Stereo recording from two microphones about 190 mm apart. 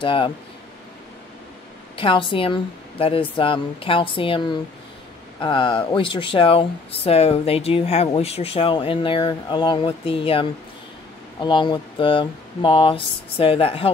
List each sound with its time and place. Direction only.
0.0 s speech: 25° left (ahead or behind)
2.0 s speech: 25° left (ahead or behind)
11.4 s speech: 25° left (ahead or behind)